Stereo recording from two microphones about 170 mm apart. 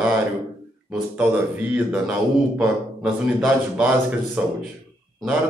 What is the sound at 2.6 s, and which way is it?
A man's voice, 5° right (ahead or behind).